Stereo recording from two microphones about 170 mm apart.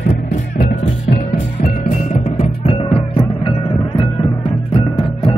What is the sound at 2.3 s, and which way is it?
Music, 35° left (ahead or behind).